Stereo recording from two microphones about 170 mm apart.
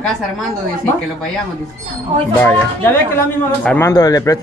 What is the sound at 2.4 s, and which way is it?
Speech, 10° left (ahead or behind).